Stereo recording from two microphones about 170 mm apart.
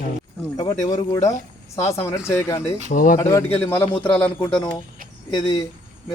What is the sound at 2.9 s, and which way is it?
Speech, 50° left (ahead or behind).